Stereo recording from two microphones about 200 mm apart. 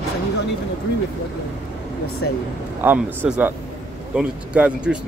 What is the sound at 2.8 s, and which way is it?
Speech, 10° right (ahead or behind).